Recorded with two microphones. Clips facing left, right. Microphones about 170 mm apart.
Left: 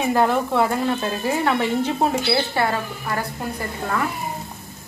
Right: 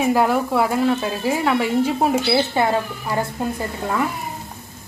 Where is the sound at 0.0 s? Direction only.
5° right (ahead or behind).